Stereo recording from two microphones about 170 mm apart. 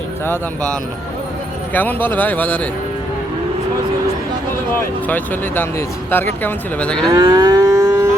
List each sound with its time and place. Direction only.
1.7 s speech: 10° left (ahead or behind)
5.0 s speech: 10° left (ahead or behind)
7.1 s moo: 25° right (ahead or behind)